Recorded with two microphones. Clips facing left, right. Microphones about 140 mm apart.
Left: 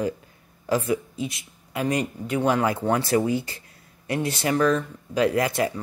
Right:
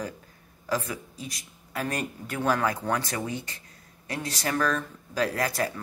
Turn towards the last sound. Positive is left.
turn(degrees=25)  # may be behind; listen again after turning